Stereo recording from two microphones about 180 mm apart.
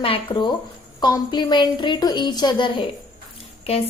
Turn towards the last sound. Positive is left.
turn(degrees=35)  # may be behind; listen again after turning